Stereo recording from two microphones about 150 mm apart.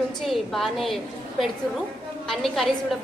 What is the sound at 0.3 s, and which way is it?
Speech, centre (ahead or behind).